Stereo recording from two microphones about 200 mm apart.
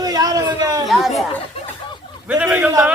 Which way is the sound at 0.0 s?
20° right (ahead or behind).